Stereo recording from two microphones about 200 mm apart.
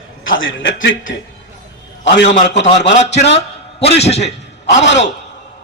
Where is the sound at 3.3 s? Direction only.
30° left (ahead or behind).